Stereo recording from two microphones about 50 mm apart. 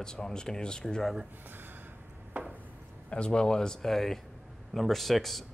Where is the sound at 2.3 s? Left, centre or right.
Right.